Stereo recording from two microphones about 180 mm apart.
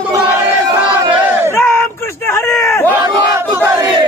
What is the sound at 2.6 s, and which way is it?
Crowd, 15° left (ahead or behind).